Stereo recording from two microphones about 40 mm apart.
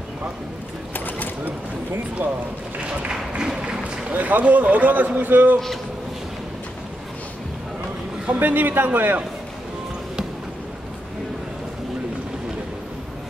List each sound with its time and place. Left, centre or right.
0.9 s a sound: left
2.9 s run: right
4.1 s speech: right
8.4 s speech: right